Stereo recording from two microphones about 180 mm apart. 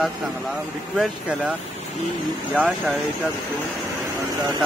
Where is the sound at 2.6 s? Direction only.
Centre (ahead or behind).